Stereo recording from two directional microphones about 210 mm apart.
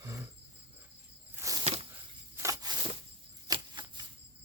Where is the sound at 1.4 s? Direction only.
15° right (ahead or behind).